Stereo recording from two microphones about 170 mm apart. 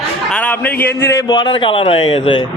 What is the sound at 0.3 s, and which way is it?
A man's voice, 10° left (ahead or behind).